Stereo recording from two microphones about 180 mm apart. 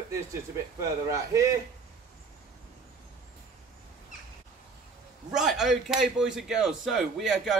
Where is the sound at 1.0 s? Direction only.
15° right (ahead or behind).